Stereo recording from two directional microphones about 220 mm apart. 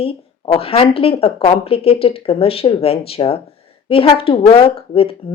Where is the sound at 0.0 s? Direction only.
25° left (ahead or behind).